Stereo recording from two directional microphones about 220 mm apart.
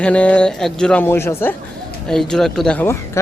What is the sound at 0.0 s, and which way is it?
A woman's voice, 5° left (ahead or behind).